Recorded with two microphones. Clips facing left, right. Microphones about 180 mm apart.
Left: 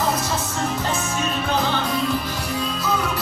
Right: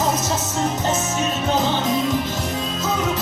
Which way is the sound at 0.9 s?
20° right (ahead or behind).